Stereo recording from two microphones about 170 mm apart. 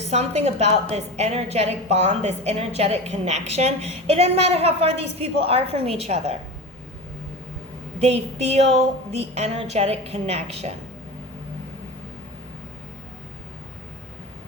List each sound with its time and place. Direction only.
0.1 s a woman's voice: 40° right (ahead or behind)
7.9 s a woman's voice: 40° right (ahead or behind)